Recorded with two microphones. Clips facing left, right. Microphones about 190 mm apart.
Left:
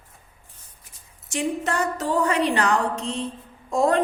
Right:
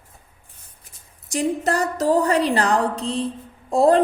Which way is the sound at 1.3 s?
35° right (ahead or behind).